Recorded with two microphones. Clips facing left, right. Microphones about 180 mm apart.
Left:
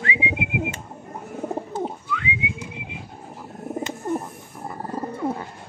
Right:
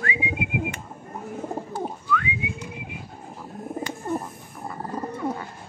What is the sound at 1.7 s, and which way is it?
Whistling, 20° left (ahead or behind).